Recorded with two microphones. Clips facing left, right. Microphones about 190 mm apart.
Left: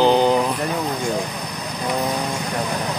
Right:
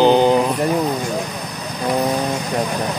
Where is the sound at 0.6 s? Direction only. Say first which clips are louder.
Right 5 dB; 15° right (ahead or behind).